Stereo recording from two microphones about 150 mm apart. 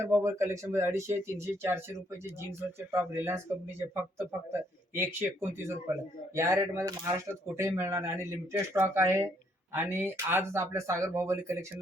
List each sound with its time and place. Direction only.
0.0 s speech: 20° right (ahead or behind)